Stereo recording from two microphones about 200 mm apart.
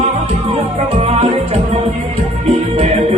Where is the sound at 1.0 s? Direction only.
30° right (ahead or behind).